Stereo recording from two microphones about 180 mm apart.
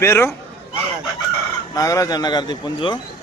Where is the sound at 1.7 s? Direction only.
20° left (ahead or behind).